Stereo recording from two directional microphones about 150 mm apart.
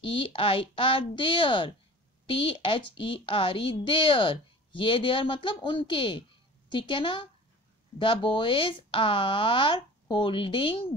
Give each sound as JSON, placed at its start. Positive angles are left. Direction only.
{"t": 0.0, "sound": "a woman's voice", "side_deg": 35}